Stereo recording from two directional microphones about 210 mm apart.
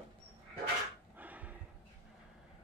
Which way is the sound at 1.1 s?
10° right (ahead or behind).